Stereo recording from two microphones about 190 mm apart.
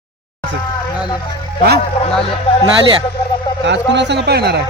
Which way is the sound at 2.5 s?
30° left (ahead or behind).